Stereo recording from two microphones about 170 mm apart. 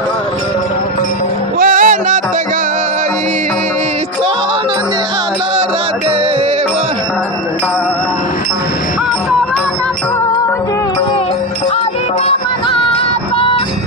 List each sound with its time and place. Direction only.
1.6 s music: 50° right (ahead or behind)